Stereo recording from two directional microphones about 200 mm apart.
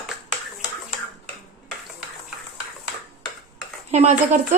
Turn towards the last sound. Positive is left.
turn(degrees=-35)  # may be behind; listen again after turning